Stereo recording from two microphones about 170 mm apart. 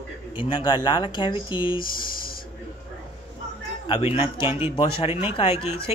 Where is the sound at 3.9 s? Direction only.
35° left (ahead or behind).